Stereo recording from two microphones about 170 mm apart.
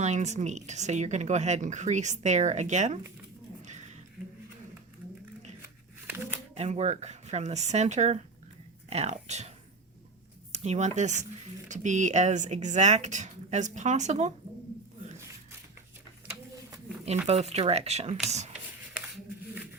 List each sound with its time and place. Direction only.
0.0 s speech: 45° right (ahead or behind)
3.6 s a sound: 45° right (ahead or behind)
6.1 s shuffling cards: 10° right (ahead or behind)
6.5 s speech: 40° right (ahead or behind)
10.5 s speech: 40° right (ahead or behind)
17.2 s speech: 40° right (ahead or behind)